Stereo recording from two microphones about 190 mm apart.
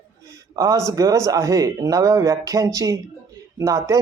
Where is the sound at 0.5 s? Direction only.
20° right (ahead or behind).